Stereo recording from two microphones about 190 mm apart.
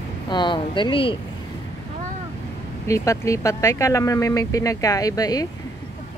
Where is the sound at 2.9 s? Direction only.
15° left (ahead or behind).